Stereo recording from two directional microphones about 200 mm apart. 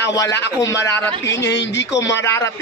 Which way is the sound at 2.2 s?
15° left (ahead or behind).